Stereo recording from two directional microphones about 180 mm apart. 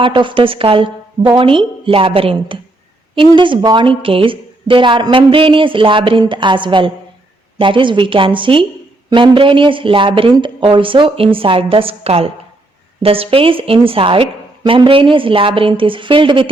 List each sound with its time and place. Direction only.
0.0 s a woman's voice: 25° right (ahead or behind)